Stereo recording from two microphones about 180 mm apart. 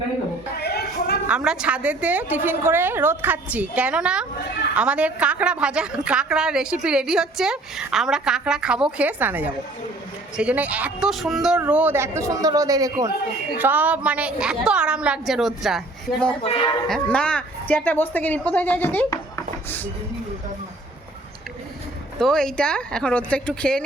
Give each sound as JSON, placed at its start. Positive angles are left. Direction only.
{"t": 0.5, "sound": "a sound", "side_deg": 60}
{"t": 1.3, "sound": "a woman's voice", "side_deg": -5}
{"t": 13.6, "sound": "a woman's voice", "side_deg": -10}
{"t": 16.4, "sound": "speech", "side_deg": 30}
{"t": 16.9, "sound": "a woman's voice", "side_deg": 5}
{"t": 22.2, "sound": "a woman's voice", "side_deg": 5}